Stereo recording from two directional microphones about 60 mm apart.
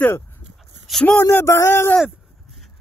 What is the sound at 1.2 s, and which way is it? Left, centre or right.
Music, left.